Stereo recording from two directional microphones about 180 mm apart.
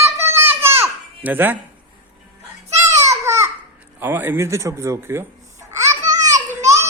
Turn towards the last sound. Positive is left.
turn(degrees=-20)  # may be behind; listen again after turning